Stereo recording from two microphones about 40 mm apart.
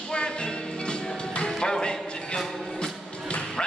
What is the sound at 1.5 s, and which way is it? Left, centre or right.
Music, centre.